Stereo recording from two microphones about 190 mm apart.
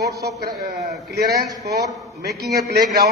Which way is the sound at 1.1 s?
55° right (ahead or behind).